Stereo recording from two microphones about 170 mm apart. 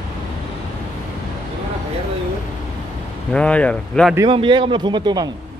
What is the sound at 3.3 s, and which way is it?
Speech, 5° left (ahead or behind).